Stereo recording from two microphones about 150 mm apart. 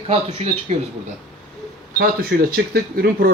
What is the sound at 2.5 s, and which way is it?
Speech, 90° right.